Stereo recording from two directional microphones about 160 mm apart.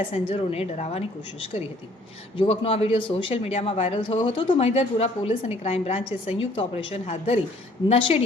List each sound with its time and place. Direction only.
0.1 s a woman's voice: 35° left (ahead or behind)
2.4 s a woman's voice: 40° left (ahead or behind)